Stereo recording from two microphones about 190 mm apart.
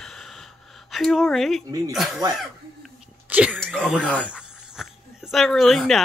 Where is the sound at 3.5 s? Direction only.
5° left (ahead or behind).